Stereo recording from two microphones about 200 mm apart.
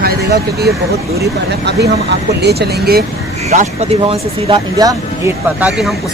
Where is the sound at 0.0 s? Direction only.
55° right (ahead or behind).